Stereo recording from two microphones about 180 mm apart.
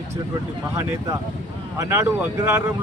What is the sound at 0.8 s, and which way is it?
Speech, 15° right (ahead or behind).